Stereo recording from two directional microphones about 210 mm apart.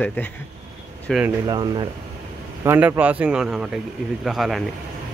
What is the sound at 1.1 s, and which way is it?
Speech, 5° left (ahead or behind).